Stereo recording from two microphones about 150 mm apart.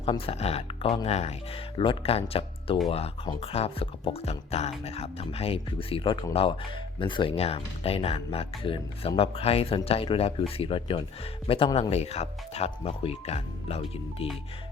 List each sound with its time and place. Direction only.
0.0 s speech: 40° left (ahead or behind)